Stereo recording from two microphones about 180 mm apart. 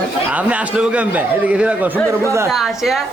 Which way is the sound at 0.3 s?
10° right (ahead or behind).